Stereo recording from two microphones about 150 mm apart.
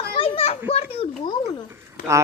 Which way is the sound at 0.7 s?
40° left (ahead or behind).